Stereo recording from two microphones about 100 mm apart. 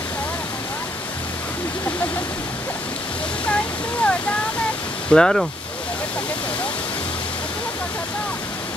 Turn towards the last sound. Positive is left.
turn(degrees=10)  # may be behind; listen again after turning